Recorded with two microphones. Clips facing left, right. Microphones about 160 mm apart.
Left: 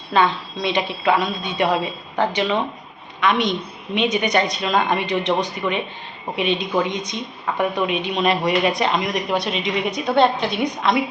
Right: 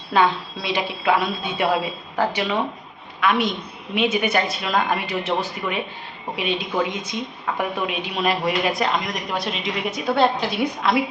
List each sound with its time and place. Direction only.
0.6 s a woman's voice: 5° right (ahead or behind)